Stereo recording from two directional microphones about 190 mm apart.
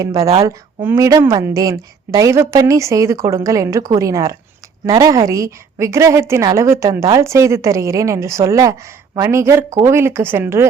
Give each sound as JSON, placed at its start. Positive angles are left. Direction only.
{"t": 0.0, "sound": "a woman's voice", "side_deg": -20}